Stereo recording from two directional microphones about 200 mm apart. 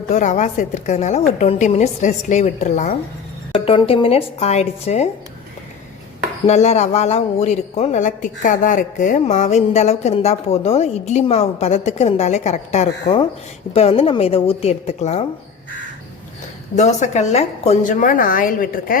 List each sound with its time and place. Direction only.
0.1 s speech: 35° left (ahead or behind)
3.7 s speech: 25° left (ahead or behind)
6.5 s speech: 35° left (ahead or behind)
16.7 s speech: 35° left (ahead or behind)